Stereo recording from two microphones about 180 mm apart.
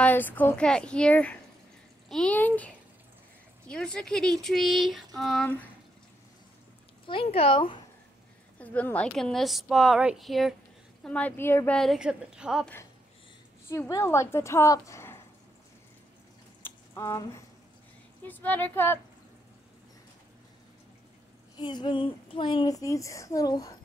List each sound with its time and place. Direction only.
0.0 s a woman's voice: 10° left (ahead or behind)
7.1 s a woman's voice: 30° left (ahead or behind)
8.5 s a woman's voice: 10° left (ahead or behind)
13.7 s a woman's voice: 15° left (ahead or behind)
16.6 s a sound: 15° left (ahead or behind)
18.2 s a woman's voice: 10° left (ahead or behind)
21.5 s a woman's voice: 25° left (ahead or behind)